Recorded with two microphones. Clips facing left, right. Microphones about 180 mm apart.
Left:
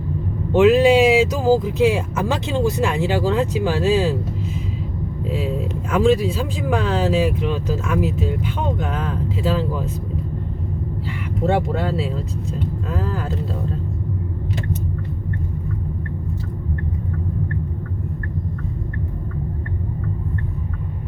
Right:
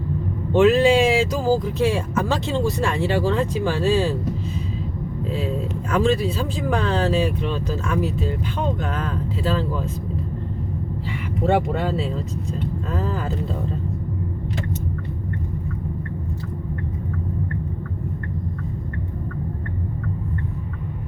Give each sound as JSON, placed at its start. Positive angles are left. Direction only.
{"t": 0.6, "sound": "speech", "side_deg": 10}
{"t": 5.9, "sound": "speech", "side_deg": 10}
{"t": 11.4, "sound": "speech", "side_deg": 0}
{"t": 12.9, "sound": "vehicle", "side_deg": 5}